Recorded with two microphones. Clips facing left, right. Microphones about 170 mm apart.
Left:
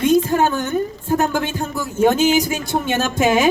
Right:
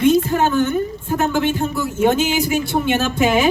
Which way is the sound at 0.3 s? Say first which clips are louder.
Right 1 dB; 45° left (ahead or behind).